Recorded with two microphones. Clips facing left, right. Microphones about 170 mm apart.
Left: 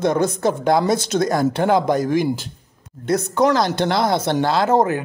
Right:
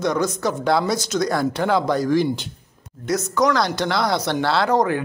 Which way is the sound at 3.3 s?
25° left (ahead or behind).